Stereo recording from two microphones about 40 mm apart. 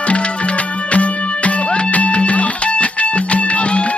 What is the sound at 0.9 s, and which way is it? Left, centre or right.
Music, left.